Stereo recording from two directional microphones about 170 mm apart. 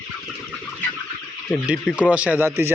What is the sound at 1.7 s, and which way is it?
Speech, 5° right (ahead or behind).